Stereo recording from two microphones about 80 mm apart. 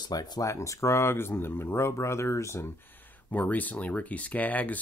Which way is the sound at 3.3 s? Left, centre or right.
Centre.